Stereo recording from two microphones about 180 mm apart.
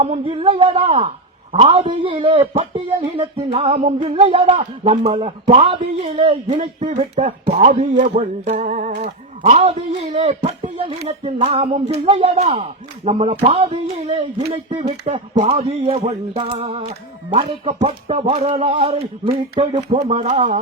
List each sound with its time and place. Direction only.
0.0 s speech: 35° right (ahead or behind)